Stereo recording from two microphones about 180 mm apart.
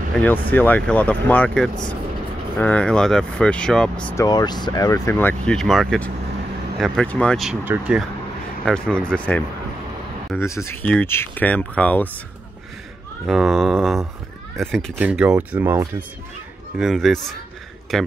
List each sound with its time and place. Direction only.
0.2 s speech: 10° left (ahead or behind)
4.2 s speech: 20° left (ahead or behind)
13.3 s speech: centre (ahead or behind)
15.0 s speech: 5° right (ahead or behind)
16.7 s speech: centre (ahead or behind)